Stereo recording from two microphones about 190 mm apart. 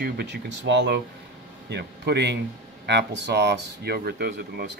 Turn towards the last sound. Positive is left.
turn(degrees=-55)  # may be behind; listen again after turning